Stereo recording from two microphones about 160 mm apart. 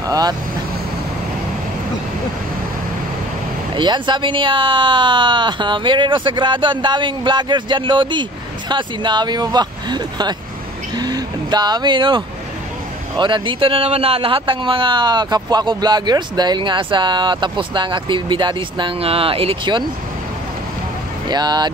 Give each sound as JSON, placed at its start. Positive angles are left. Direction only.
{"t": 0.0, "sound": "speech", "side_deg": -25}
{"t": 3.7, "sound": "speech", "side_deg": -30}
{"t": 11.0, "sound": "vehicle", "side_deg": -25}
{"t": 13.2, "sound": "speech", "side_deg": -30}
{"t": 21.3, "sound": "speech", "side_deg": -25}